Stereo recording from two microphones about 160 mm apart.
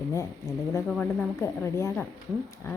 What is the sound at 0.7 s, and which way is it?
A woman's voice, 10° left (ahead or behind).